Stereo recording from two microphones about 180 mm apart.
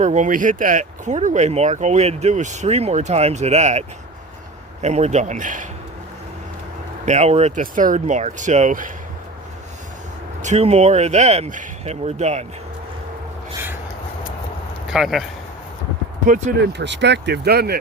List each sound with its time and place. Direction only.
0.0 s speech: 40° right (ahead or behind)
7.0 s speech: 40° right (ahead or behind)
10.4 s speech: 40° right (ahead or behind)
14.8 s speech: 5° right (ahead or behind)
16.2 s speech: 45° right (ahead or behind)
16.7 s speech: 80° right; by 17.7 s 60° right (ahead or behind)